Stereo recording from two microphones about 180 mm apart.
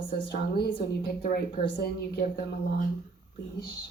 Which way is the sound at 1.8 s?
60° left (ahead or behind).